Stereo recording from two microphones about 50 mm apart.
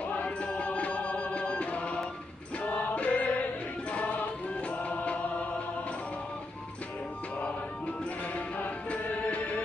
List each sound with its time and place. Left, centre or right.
0.2 s music: left
4.6 s music: left
8.5 s music: left